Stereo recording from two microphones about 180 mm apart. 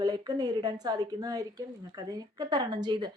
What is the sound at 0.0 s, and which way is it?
A woman's voice, 20° right (ahead or behind).